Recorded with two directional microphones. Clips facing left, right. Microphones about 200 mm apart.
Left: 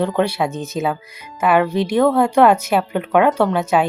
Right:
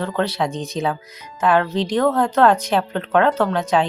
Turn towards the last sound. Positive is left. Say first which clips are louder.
# left 2 dB
turn(degrees=10)  # may be behind; listen again after turning